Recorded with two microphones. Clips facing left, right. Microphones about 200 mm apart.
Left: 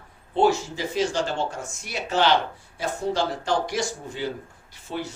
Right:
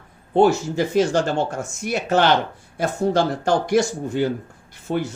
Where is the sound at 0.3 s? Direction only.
50° right (ahead or behind).